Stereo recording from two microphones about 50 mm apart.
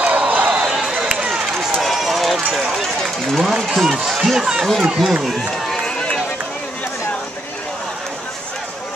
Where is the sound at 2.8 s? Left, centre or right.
Centre.